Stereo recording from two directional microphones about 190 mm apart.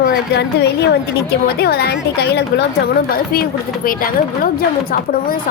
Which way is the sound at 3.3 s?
50° left (ahead or behind).